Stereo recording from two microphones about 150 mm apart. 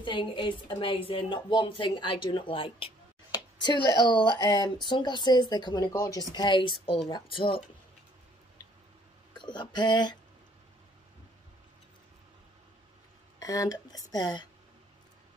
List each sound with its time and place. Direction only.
0.0 s a woman's voice: 30° left (ahead or behind)
9.3 s speech: 30° left (ahead or behind)
13.4 s speech: 25° left (ahead or behind)